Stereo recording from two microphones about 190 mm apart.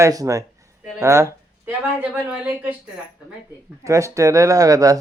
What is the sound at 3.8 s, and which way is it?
A man's voice, 15° right (ahead or behind).